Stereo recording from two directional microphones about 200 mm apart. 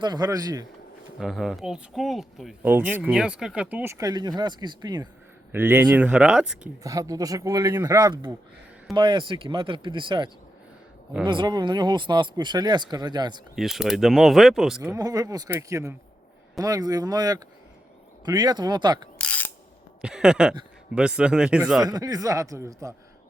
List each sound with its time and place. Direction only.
0.0 s speech: 20° right (ahead or behind)
1.2 s speech: centre (ahead or behind); by 5.0 s 20° right (ahead or behind)
5.5 s a man's voice: 10° right (ahead or behind)
6.8 s a man's voice: 15° right (ahead or behind)
11.3 s speech: 20° right (ahead or behind)
13.6 s speech: centre (ahead or behind)
14.9 s speech: 20° right (ahead or behind)
19.2 s ratchet: 5° left (ahead or behind)
20.0 s speech: 5° right (ahead or behind)
21.8 s a man's voice: 20° right (ahead or behind)